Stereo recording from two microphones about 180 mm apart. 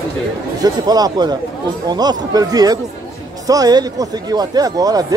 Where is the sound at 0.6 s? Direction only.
20° right (ahead or behind).